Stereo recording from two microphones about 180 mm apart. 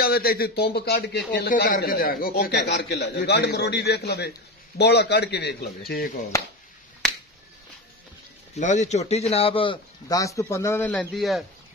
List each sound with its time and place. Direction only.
0.0 s a man's voice: 55° left (ahead or behind)
8.5 s a man's voice: 40° left (ahead or behind); by 10.9 s 15° left (ahead or behind)
10.9 s a man's voice: centre (ahead or behind)